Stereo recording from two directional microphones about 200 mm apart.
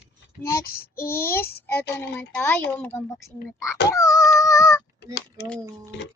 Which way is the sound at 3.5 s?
15° left (ahead or behind).